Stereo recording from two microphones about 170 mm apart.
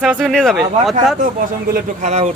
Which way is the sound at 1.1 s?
55° right (ahead or behind).